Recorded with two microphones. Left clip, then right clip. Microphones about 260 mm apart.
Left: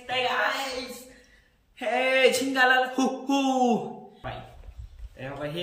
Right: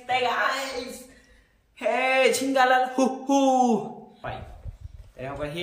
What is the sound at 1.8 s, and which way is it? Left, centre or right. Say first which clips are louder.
A man's voice: right 1 dB; centre.